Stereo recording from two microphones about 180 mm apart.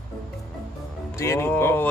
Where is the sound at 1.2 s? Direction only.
15° left (ahead or behind).